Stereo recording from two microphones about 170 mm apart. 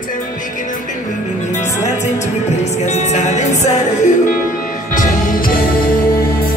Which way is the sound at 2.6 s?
40° left (ahead or behind).